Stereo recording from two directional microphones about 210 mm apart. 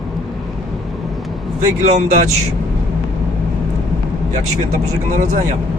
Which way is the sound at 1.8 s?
30° right (ahead or behind).